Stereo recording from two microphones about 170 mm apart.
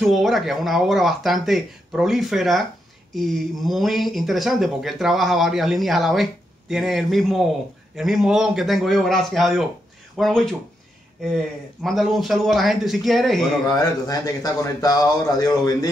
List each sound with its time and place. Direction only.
0.0 s speech: centre (ahead or behind)
11.8 s speech: centre (ahead or behind)
13.7 s a man's voice: 20° left (ahead or behind)